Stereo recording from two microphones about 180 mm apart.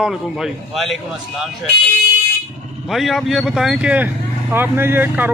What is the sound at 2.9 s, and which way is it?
Speech, centre (ahead or behind).